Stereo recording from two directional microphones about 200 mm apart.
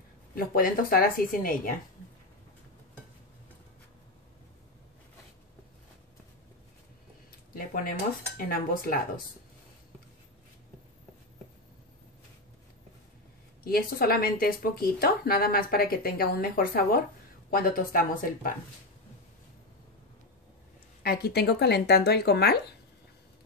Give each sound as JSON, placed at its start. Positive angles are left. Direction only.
{"t": 0.3, "sound": "a woman's voice", "side_deg": 45}
{"t": 7.5, "sound": "a woman's voice", "side_deg": 45}
{"t": 13.7, "sound": "a woman's voice", "side_deg": 50}
{"t": 21.0, "sound": "a woman's voice", "side_deg": 50}